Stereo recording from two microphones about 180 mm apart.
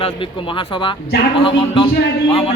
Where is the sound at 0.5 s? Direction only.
25° left (ahead or behind).